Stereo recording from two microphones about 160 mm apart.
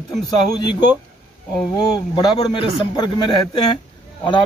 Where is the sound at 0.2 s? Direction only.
25° left (ahead or behind).